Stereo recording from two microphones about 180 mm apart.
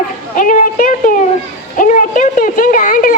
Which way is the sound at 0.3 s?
45° left (ahead or behind).